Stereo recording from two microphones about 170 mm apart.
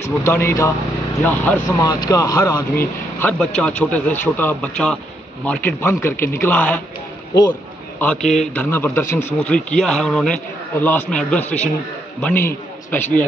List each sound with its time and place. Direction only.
0.0 s a man's voice: 15° left (ahead or behind)
1.8 s speech: 20° left (ahead or behind)
3.2 s a man's voice: 5° left (ahead or behind)
8.0 s a man's voice: 5° left (ahead or behind)
8.6 s a man's voice: 15° left (ahead or behind)